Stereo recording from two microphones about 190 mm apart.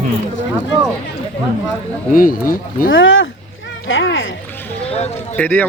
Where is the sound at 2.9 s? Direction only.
90° left.